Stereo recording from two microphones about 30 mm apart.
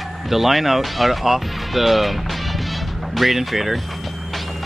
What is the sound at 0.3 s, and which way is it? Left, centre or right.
Speech, centre.